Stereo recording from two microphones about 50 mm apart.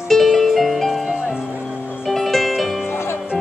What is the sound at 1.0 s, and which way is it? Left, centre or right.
Music, centre.